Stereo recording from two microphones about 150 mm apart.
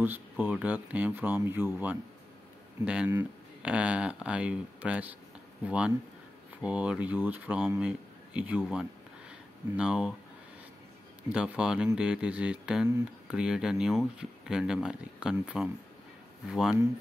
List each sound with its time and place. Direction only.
0.0 s a man's voice: 10° right (ahead or behind)
11.2 s speech: 5° right (ahead or behind)